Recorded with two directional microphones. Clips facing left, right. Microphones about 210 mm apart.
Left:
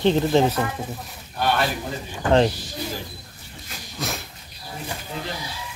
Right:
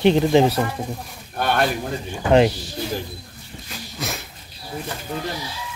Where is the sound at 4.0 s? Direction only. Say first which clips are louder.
Even; centre (ahead or behind).